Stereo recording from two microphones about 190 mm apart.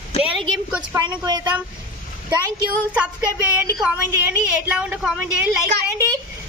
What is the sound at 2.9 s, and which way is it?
A woman's voice, 5° right (ahead or behind).